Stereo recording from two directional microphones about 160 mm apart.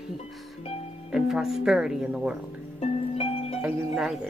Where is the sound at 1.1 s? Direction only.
Centre (ahead or behind).